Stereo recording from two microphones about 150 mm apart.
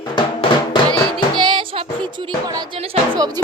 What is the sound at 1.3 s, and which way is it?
Music, 30° right (ahead or behind).